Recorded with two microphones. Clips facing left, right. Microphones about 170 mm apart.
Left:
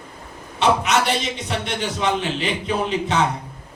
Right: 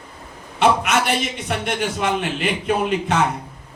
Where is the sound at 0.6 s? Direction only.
55° right (ahead or behind).